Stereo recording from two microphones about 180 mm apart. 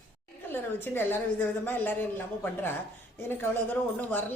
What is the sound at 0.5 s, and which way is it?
A woman's voice, 10° left (ahead or behind).